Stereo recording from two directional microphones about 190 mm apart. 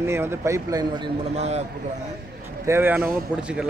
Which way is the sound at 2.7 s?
10° right (ahead or behind).